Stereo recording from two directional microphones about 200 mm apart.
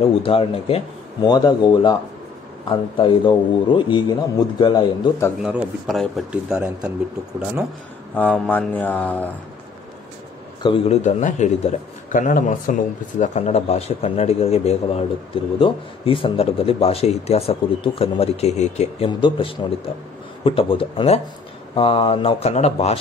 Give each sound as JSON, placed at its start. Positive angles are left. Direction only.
{"t": 0.2, "sound": "speech", "side_deg": 30}
{"t": 5.4, "sound": "speech", "side_deg": -5}
{"t": 8.2, "sound": "mantra", "side_deg": 10}
{"t": 10.6, "sound": "a man's voice", "side_deg": 25}